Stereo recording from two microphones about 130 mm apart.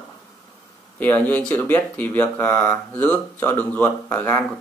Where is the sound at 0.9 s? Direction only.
15° left (ahead or behind).